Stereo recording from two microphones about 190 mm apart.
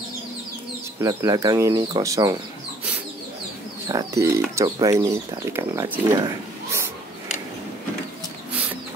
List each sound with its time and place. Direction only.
1.0 s speech: 20° right (ahead or behind)
3.9 s speech: 15° right (ahead or behind)